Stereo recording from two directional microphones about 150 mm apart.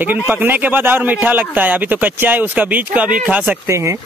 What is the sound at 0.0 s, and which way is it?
Speech, 10° right (ahead or behind).